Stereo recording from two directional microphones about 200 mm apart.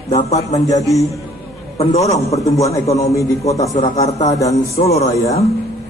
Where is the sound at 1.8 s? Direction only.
30° left (ahead or behind).